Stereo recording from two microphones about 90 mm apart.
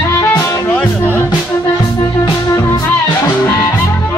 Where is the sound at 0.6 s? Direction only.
20° left (ahead or behind).